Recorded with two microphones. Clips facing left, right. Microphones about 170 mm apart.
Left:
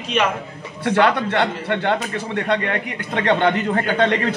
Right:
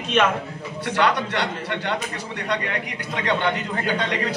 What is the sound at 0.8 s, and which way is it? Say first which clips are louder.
A man's voice: left 5 dB; 55° left (ahead or behind).